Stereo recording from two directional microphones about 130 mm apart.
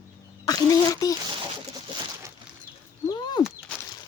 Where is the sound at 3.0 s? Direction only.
35° left (ahead or behind).